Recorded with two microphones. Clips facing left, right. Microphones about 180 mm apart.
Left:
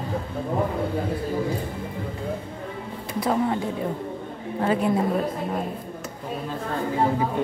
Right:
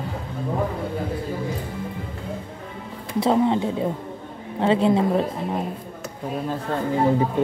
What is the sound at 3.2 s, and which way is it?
Speech, 25° right (ahead or behind).